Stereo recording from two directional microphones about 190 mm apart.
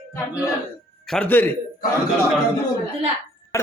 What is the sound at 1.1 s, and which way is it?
Music, 5° left (ahead or behind).